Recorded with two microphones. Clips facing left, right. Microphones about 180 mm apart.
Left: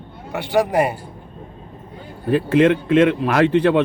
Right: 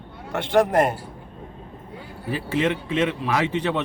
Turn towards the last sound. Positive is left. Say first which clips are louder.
# left 8 dB
turn(degrees=60)  # may be behind; listen again after turning